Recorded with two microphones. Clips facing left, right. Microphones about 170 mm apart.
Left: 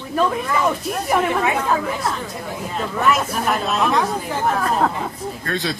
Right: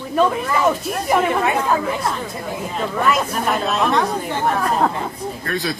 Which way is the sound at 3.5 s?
Centre (ahead or behind).